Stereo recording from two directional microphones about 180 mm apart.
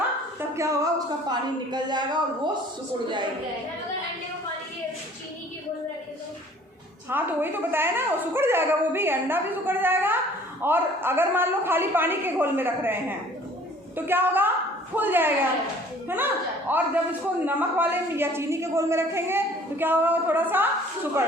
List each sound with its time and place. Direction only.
0.3 s a woman's voice: 15° right (ahead or behind)
7.1 s a man's voice: 10° right (ahead or behind)